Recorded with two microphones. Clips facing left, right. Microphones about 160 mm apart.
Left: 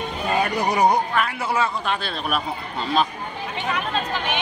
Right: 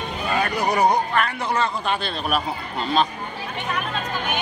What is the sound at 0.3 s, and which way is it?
Music, 20° left (ahead or behind).